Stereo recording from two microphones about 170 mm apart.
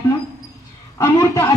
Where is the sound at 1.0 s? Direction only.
15° left (ahead or behind).